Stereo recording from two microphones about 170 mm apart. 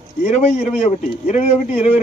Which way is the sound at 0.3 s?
40° left (ahead or behind).